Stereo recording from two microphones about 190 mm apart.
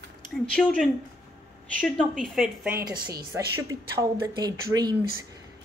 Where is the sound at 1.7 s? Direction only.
5° left (ahead or behind).